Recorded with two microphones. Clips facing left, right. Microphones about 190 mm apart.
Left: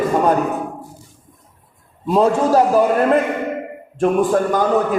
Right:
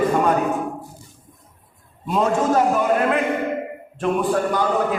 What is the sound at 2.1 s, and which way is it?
A man's voice, 35° left (ahead or behind).